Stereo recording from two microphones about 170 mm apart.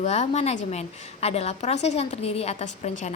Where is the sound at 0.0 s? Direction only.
40° left (ahead or behind).